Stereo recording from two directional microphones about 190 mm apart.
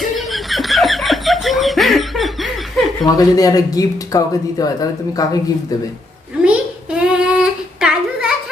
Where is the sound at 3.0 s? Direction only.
20° left (ahead or behind).